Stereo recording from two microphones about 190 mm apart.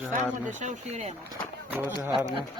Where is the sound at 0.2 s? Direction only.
40° right (ahead or behind).